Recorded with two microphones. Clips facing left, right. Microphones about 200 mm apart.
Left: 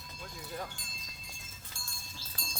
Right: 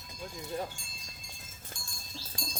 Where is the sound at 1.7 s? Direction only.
50° right (ahead or behind).